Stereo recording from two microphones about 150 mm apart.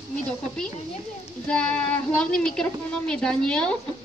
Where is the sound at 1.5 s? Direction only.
5° left (ahead or behind).